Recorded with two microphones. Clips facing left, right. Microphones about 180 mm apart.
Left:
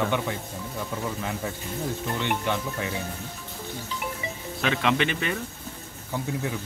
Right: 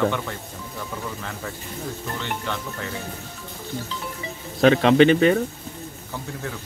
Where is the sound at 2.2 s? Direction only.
15° left (ahead or behind).